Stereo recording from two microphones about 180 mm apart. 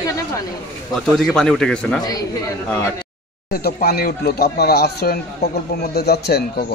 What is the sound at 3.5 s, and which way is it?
Speech, 60° left (ahead or behind).